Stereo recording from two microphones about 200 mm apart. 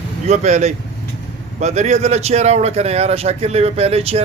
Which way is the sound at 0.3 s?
35° right (ahead or behind).